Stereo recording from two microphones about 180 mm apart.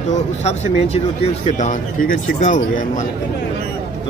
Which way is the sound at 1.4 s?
40° left (ahead or behind).